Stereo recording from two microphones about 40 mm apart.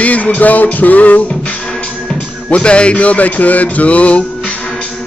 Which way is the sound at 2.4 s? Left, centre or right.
Left.